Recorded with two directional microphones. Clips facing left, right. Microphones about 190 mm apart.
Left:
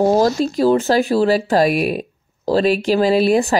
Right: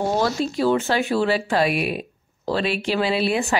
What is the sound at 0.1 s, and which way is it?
Speech, 40° left (ahead or behind).